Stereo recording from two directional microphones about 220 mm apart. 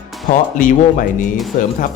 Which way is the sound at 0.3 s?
35° left (ahead or behind).